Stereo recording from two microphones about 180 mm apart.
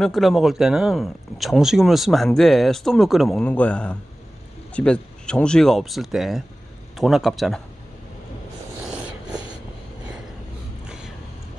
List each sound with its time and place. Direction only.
0.0 s speech: centre (ahead or behind)